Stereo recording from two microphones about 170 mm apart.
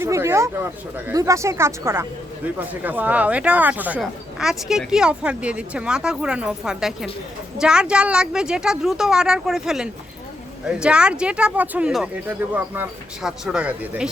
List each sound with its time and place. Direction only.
0.0 s speech: 15° right (ahead or behind)